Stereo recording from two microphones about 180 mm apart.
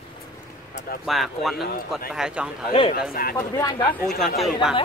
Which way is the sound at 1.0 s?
Centre (ahead or behind).